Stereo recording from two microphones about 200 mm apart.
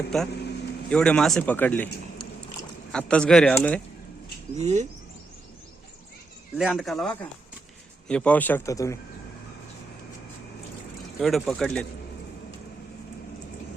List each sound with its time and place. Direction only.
0.1 s speech: centre (ahead or behind)
2.9 s speech: 5° left (ahead or behind)
4.5 s speech: 35° right (ahead or behind)
6.6 s speech: centre (ahead or behind); by 9.0 s 15° left (ahead or behind)
11.2 s speech: centre (ahead or behind)